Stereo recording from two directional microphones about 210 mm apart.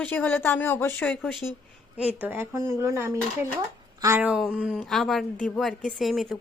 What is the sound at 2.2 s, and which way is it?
Speech, 10° right (ahead or behind).